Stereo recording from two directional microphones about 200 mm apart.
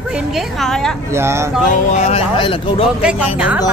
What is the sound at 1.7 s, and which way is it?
Speech, 35° left (ahead or behind).